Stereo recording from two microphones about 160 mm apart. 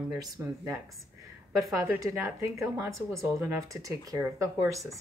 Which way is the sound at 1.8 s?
20° right (ahead or behind).